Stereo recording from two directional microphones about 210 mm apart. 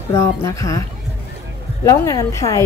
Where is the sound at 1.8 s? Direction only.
15° left (ahead or behind).